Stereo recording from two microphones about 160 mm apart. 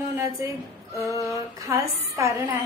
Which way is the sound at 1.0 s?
20° left (ahead or behind).